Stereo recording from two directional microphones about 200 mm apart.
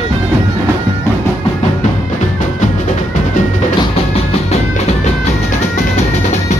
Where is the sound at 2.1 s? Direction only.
40° left (ahead or behind).